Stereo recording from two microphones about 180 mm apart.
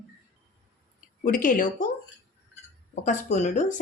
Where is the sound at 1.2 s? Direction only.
45° left (ahead or behind).